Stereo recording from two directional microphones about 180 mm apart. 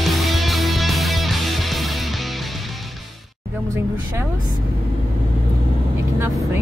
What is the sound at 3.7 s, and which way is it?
Speech, 15° right (ahead or behind).